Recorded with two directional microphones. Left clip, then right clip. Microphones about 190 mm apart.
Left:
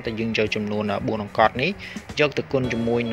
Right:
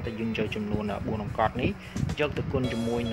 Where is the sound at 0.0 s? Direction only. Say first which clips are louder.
Left 8 dB; 15° left (ahead or behind).